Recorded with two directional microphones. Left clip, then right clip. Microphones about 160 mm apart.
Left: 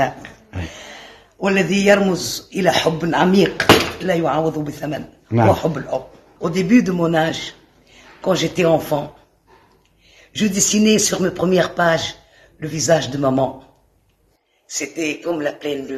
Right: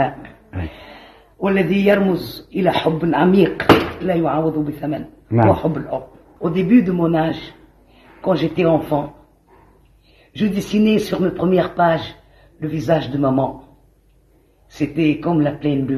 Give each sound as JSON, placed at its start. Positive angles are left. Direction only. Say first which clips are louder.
{"t": 0.0, "sound": "a man's voice", "louder": "even", "side_deg": 5}
{"t": 10.3, "sound": "a man's voice", "louder": "left 2 dB", "side_deg": 10}
{"t": 14.7, "sound": "a man's voice", "louder": "right 4 dB", "side_deg": 10}